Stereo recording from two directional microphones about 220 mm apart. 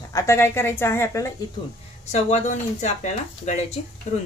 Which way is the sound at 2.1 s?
30° left (ahead or behind).